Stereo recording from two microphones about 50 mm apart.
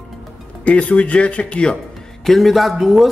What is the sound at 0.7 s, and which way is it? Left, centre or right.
Speech, left.